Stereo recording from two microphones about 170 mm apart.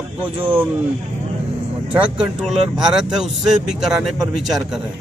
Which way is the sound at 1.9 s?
5° right (ahead or behind).